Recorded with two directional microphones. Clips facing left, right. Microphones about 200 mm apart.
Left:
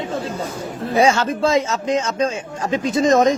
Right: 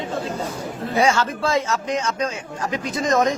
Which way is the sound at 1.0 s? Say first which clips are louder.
Left 4 dB; 25° left (ahead or behind).